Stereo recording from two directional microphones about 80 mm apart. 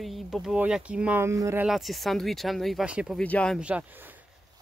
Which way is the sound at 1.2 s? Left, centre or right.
Right.